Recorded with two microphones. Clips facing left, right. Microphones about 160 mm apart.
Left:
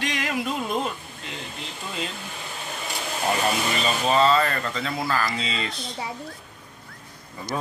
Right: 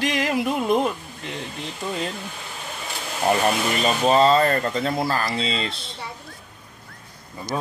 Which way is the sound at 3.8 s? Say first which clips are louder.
Right 4 dB; 40° right (ahead or behind).